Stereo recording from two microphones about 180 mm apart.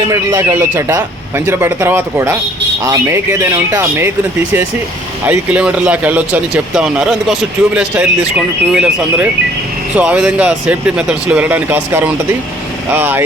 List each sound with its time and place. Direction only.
0.1 s speech: 15° right (ahead or behind)
5.2 s speech: 10° right (ahead or behind)